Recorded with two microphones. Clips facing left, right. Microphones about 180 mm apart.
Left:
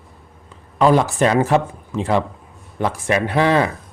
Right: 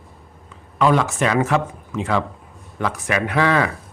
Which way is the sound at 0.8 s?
35° left (ahead or behind).